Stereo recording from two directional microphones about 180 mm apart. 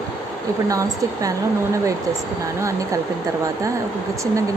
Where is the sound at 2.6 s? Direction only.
15° right (ahead or behind).